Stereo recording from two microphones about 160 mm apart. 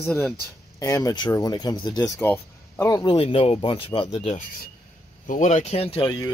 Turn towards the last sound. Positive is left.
turn(degrees=35)  # may be behind; listen again after turning